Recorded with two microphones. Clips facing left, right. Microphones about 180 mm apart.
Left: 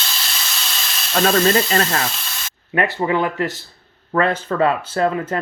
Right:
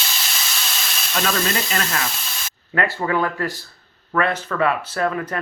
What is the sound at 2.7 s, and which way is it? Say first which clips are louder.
Speech: left 2 dB; 20° left (ahead or behind).